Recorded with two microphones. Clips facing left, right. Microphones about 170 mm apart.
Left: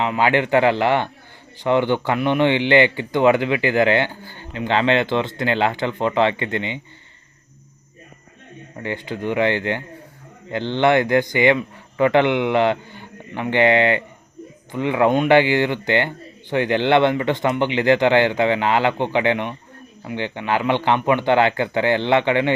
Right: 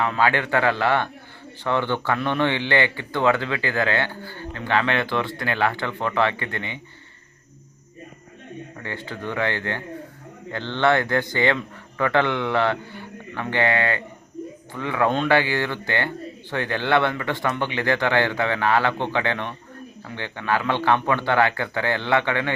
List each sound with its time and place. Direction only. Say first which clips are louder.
0.0 s a man's voice: left 3 dB; 15° left (ahead or behind)
8.8 s a man's voice: left 7 dB; 15° left (ahead or behind)